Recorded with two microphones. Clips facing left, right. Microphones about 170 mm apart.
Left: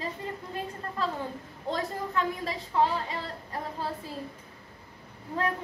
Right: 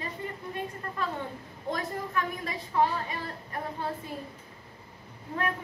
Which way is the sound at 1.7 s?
25° left (ahead or behind).